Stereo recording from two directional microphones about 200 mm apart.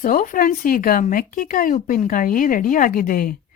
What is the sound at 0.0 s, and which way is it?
A woman's voice, 45° left (ahead or behind).